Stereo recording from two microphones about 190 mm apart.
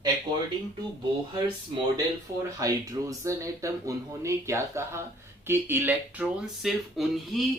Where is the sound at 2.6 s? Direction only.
15° right (ahead or behind).